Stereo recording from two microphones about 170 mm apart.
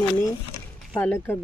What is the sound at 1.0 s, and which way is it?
Speech, 10° left (ahead or behind).